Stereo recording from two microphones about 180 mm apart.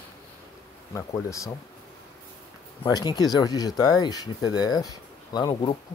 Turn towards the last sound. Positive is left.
turn(degrees=20)  # may be behind; listen again after turning